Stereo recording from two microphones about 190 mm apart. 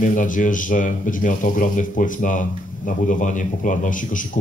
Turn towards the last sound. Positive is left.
turn(degrees=45)  # may be behind; listen again after turning